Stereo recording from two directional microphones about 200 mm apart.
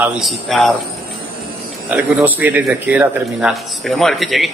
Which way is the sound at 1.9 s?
10° right (ahead or behind).